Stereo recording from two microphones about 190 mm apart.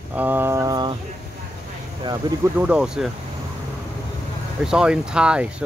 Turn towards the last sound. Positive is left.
turn(degrees=-5)  # may be behind; listen again after turning